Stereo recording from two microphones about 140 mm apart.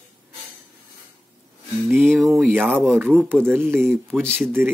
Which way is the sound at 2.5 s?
15° right (ahead or behind).